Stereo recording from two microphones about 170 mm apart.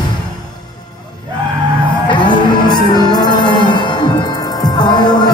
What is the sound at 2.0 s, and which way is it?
Music, 25° left (ahead or behind).